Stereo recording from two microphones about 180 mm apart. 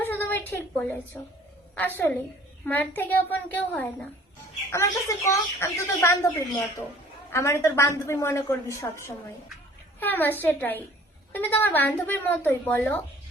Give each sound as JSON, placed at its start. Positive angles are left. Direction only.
{"t": 0.0, "sound": "a sound", "side_deg": 10}
{"t": 1.7, "sound": "a woman's voice", "side_deg": 10}
{"t": 7.3, "sound": "a woman's voice", "side_deg": 15}